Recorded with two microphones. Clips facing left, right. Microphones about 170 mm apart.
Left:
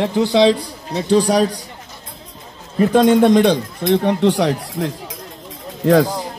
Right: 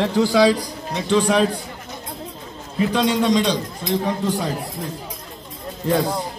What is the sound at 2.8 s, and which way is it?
A man's voice, 50° left (ahead or behind).